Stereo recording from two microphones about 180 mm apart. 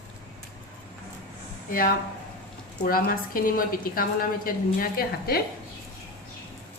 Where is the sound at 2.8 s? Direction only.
55° left (ahead or behind).